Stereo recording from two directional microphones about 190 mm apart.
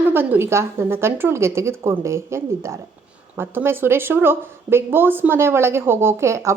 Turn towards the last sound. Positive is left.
turn(degrees=-15)  # may be behind; listen again after turning